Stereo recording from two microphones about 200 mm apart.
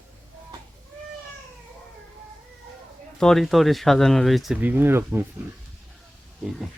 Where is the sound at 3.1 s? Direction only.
5° left (ahead or behind).